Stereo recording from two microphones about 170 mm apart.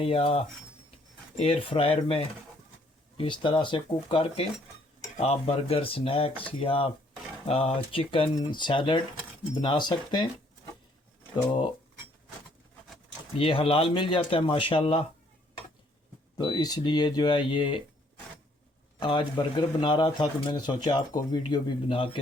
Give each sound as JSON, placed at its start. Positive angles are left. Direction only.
{"t": 0.0, "sound": "speech", "side_deg": 35}
{"t": 13.4, "sound": "speech", "side_deg": 30}
{"t": 16.4, "sound": "speech", "side_deg": 25}
{"t": 18.9, "sound": "speech", "side_deg": 30}